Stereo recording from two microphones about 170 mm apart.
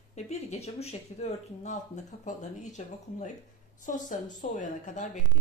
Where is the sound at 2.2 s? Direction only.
45° left (ahead or behind).